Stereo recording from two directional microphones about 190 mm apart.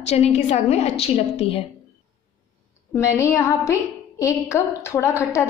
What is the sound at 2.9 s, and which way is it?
A woman's voice, 15° left (ahead or behind).